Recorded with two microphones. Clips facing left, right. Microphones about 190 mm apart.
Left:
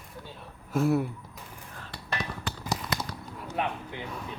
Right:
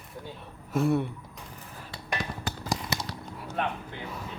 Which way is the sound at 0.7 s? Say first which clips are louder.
Even; centre (ahead or behind).